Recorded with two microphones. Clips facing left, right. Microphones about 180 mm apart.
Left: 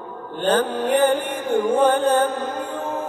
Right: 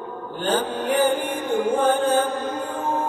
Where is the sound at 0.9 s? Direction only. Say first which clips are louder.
Left 1 dB; 65° left (ahead or behind).